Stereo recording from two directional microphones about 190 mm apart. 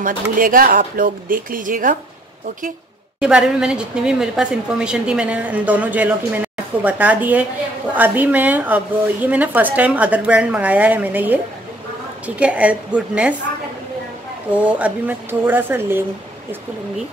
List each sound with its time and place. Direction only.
0.0 s speech: 45° right (ahead or behind)
3.2 s a woman's voice: 5° right (ahead or behind)
12.4 s a woman's voice: 5° right (ahead or behind)
14.5 s a woman's voice: 5° right (ahead or behind)